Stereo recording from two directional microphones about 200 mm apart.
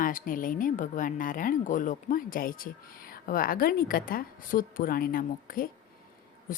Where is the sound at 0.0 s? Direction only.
45° left (ahead or behind).